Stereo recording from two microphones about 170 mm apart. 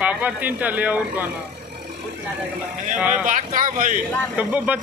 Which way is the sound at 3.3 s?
50° right (ahead or behind).